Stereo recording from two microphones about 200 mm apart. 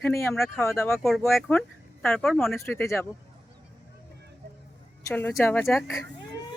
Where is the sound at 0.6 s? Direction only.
15° left (ahead or behind).